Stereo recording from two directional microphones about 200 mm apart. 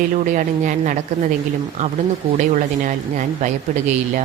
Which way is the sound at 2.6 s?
40° right (ahead or behind).